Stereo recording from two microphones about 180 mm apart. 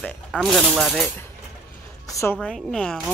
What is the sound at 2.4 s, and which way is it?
Speech, 5° left (ahead or behind).